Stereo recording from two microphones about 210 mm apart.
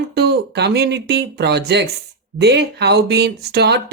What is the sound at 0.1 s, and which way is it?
Speech, 50° right (ahead or behind).